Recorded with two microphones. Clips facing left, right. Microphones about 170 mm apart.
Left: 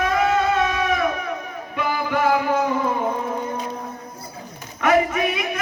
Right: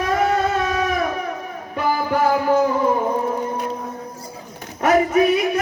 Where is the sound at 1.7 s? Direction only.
40° right (ahead or behind).